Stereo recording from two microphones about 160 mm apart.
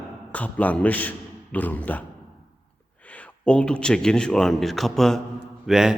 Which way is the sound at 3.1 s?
5° left (ahead or behind).